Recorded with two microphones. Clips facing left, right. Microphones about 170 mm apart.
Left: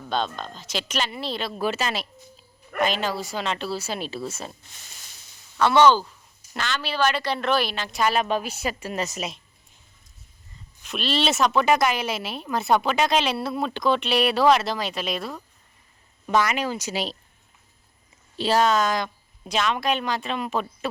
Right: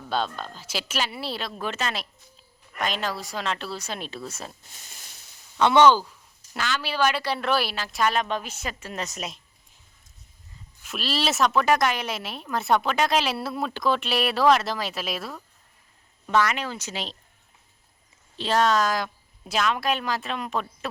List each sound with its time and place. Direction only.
0.1 s speech: 5° right (ahead or behind)
1.5 s a woman's voice: 10° left (ahead or behind)
5.5 s a woman's voice: 20° right (ahead or behind); by 9.4 s centre (ahead or behind)
10.8 s a woman's voice: centre (ahead or behind)
16.2 s speech: 10° left (ahead or behind)
18.3 s a woman's voice: 5° left (ahead or behind)